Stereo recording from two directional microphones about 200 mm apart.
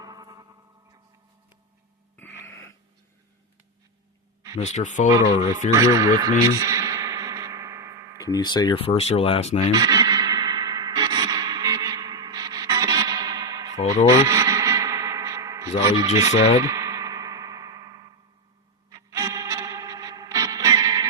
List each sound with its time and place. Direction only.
0.0 s effects unit: 20° right (ahead or behind)
2.1 s a sound: 10° left (ahead or behind)
4.7 s speech: 35° left (ahead or behind)
5.2 s speech: 25° left (ahead or behind)
5.7 s speech: 15° right (ahead or behind)
6.5 s effects unit: 15° right (ahead or behind)
8.2 s speech: 20° left (ahead or behind)
9.7 s music: 20° right (ahead or behind)
14.1 s guitar: 15° right (ahead or behind)
16.0 s speech: 15° right (ahead or behind)
16.3 s speech: 30° left (ahead or behind)
16.6 s music: 15° right (ahead or behind)